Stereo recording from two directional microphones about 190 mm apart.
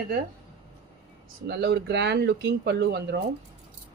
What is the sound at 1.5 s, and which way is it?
Speech, 60° right (ahead or behind).